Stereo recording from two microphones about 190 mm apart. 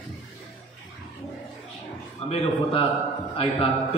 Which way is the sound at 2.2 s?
30° left (ahead or behind).